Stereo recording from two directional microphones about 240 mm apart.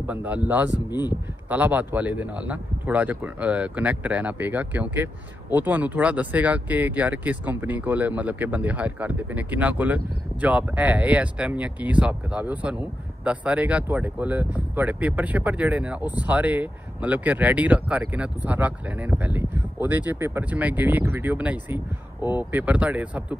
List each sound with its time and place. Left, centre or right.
0.0 s speech: centre
0.7 s speech: centre
1.5 s speech: centre